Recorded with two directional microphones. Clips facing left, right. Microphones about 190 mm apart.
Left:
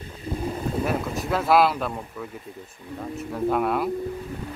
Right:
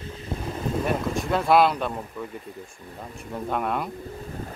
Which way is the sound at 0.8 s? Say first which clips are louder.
Right 1 dB; centre (ahead or behind).